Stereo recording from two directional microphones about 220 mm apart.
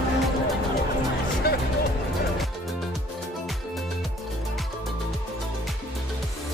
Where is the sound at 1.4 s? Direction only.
45° left (ahead or behind).